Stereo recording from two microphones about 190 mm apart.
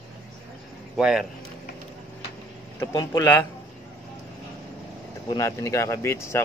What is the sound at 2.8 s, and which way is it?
Speech, 20° left (ahead or behind).